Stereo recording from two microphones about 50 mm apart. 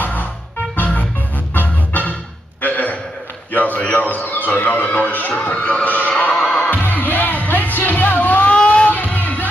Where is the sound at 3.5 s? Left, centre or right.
Left.